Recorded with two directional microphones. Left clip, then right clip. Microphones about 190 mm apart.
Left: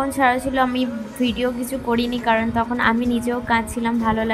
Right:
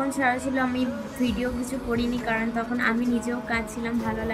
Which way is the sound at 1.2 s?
20° left (ahead or behind).